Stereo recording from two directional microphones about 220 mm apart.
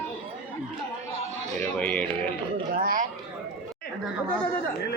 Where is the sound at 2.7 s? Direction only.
40° right (ahead or behind).